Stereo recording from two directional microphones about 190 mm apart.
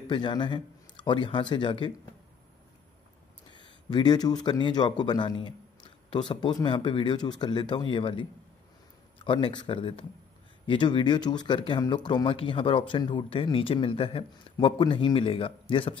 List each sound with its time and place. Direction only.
0.1 s speech: 25° left (ahead or behind)
3.4 s speech: 25° left (ahead or behind)